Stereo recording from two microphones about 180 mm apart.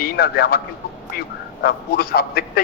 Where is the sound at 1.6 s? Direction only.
60° left (ahead or behind).